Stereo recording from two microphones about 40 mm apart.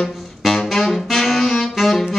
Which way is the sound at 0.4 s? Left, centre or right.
Centre.